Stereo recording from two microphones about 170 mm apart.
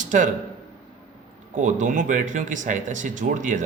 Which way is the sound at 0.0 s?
45° right (ahead or behind).